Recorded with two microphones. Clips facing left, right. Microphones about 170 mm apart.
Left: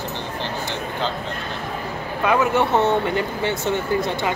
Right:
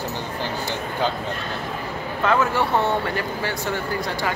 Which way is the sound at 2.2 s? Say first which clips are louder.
Left 2 dB; 15° left (ahead or behind).